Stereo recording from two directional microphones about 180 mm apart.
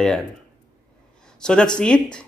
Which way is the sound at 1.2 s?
5° left (ahead or behind).